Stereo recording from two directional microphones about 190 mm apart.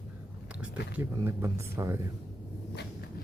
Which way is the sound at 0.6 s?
10° right (ahead or behind).